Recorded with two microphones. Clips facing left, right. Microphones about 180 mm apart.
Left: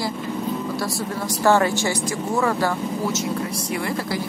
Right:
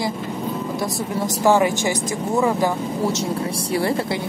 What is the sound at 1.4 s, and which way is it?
Speech, 15° right (ahead or behind).